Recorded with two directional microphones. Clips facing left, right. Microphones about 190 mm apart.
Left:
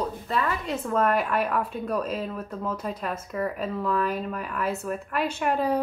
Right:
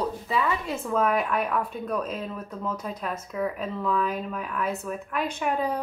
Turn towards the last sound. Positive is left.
turn(degrees=5)  # may be behind; listen again after turning